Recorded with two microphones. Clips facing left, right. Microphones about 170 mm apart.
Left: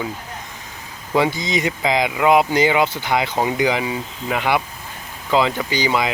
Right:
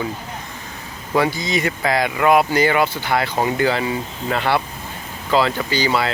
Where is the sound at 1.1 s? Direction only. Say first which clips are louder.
Even; 20° left (ahead or behind).